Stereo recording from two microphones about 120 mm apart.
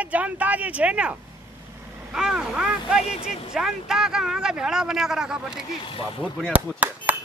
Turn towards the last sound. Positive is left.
turn(degrees=-15)  # may be behind; listen again after turning